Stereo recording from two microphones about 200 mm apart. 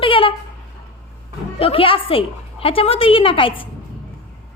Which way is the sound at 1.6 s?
30° left (ahead or behind).